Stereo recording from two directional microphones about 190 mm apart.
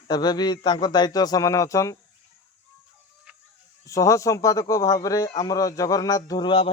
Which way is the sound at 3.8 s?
15° left (ahead or behind).